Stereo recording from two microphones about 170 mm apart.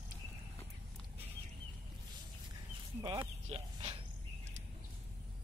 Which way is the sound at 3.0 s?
20° right (ahead or behind).